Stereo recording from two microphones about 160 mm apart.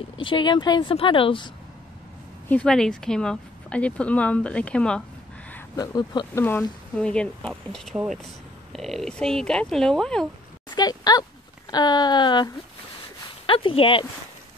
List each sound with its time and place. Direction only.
0.2 s a woman's voice: 30° left (ahead or behind)
2.4 s a woman's voice: 5° left (ahead or behind)
5.8 s speech: 25° left (ahead or behind)
6.4 s speech: 10° left (ahead or behind)
10.7 s a sound: 25° left (ahead or behind)
11.7 s a woman's voice: 25° left (ahead or behind)